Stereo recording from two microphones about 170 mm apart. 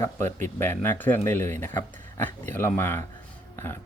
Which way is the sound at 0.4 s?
15° left (ahead or behind).